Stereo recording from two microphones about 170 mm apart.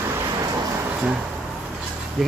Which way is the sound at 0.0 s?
20° right (ahead or behind).